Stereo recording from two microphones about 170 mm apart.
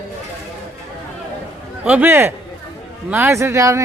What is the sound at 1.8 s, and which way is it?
Speech, 10° right (ahead or behind).